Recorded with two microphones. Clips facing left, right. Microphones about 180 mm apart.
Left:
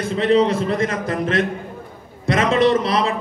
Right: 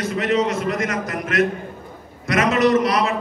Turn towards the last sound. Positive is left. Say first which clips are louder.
# even
turn(degrees=30)  # may be behind; listen again after turning